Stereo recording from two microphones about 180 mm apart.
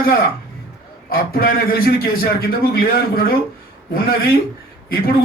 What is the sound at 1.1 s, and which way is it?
A man's voice, 55° left (ahead or behind).